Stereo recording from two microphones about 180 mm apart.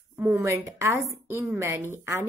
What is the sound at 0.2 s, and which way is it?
A woman's voice, 15° right (ahead or behind).